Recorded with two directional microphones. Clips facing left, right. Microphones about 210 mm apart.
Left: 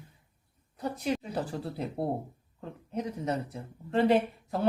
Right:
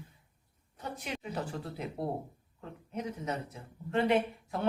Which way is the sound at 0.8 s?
35° left (ahead or behind).